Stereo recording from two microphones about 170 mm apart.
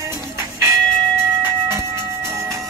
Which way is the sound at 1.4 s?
15° right (ahead or behind).